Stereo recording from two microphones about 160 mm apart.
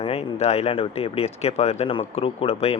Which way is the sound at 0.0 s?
40° left (ahead or behind).